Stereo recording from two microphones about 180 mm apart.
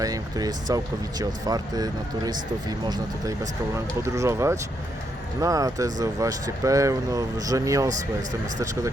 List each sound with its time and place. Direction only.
0.0 s speech: 20° right (ahead or behind)